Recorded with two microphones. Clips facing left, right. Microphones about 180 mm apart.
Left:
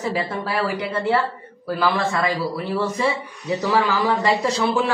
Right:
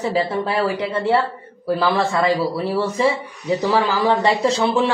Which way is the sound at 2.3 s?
30° right (ahead or behind).